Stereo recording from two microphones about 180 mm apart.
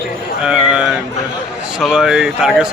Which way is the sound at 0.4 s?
5° right (ahead or behind).